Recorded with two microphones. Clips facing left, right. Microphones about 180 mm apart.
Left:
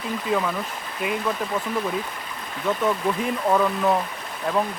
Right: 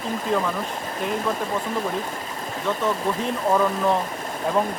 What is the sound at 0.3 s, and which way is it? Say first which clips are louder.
Speech: even; 5° left (ahead or behind).